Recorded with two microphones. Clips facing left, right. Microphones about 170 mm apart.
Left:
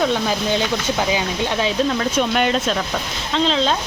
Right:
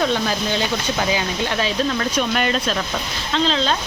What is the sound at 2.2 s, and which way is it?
Speech, 15° left (ahead or behind).